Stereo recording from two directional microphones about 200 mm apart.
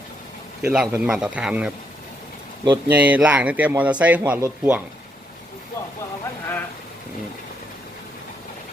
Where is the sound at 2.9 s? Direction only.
10° right (ahead or behind).